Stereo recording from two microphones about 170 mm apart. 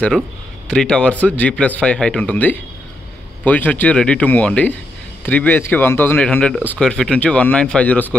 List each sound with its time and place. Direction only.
0.7 s speech: 5° left (ahead or behind)